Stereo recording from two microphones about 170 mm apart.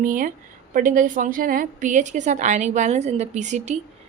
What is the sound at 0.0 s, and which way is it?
A woman's voice, 55° right (ahead or behind).